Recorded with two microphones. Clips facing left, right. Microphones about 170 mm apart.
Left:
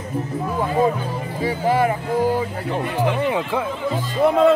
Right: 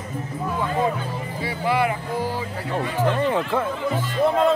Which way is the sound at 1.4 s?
40° left (ahead or behind).